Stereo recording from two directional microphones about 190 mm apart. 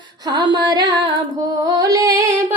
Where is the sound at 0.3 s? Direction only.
20° right (ahead or behind).